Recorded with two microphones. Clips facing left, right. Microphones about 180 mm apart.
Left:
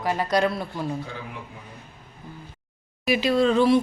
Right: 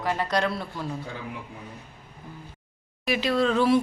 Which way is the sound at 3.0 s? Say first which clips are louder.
Left 3 dB; centre (ahead or behind).